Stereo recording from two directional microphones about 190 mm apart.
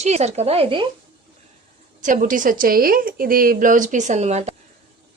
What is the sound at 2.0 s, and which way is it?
A woman's voice, 45° right (ahead or behind).